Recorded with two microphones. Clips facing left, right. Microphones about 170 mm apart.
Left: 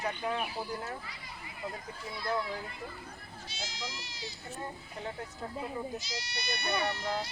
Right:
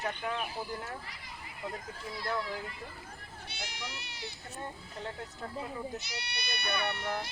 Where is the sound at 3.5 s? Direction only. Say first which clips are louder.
Left 1 dB; 60° right (ahead or behind).